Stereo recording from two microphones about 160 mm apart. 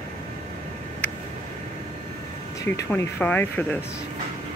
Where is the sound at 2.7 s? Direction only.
15° left (ahead or behind).